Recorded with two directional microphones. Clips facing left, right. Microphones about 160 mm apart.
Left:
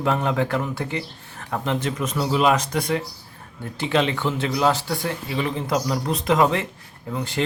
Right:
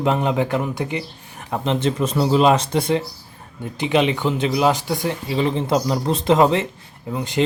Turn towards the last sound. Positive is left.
turn(degrees=-20)  # may be behind; listen again after turning